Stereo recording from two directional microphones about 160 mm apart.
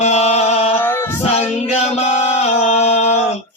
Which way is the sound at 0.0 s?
45° left (ahead or behind).